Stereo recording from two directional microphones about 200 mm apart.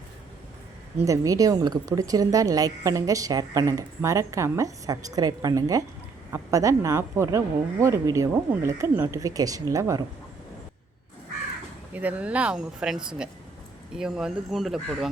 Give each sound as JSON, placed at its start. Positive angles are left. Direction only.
{"t": 1.0, "sound": "a woman's voice", "side_deg": -15}
{"t": 11.9, "sound": "speech", "side_deg": -5}